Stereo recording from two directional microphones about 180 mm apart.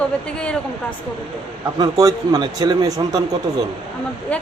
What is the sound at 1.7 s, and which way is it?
Speech, 20° right (ahead or behind).